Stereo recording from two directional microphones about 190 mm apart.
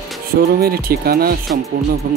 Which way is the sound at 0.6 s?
55° right (ahead or behind).